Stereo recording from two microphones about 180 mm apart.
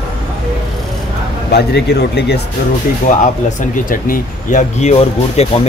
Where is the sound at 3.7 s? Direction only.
50° left (ahead or behind).